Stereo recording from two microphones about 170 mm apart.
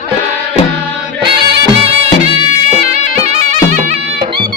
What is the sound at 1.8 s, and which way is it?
Music, 35° right (ahead or behind).